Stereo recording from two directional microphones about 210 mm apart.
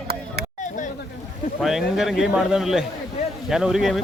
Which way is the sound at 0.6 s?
35° left (ahead or behind).